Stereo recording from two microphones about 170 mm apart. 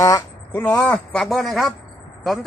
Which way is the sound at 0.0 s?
15° left (ahead or behind).